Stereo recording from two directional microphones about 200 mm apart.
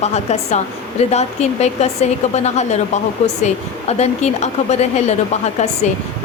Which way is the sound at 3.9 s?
35° left (ahead or behind).